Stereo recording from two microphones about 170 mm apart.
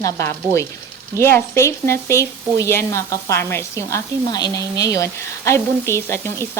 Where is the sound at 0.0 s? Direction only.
15° left (ahead or behind).